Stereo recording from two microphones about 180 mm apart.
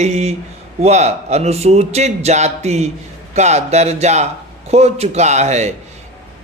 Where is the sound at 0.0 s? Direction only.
35° right (ahead or behind).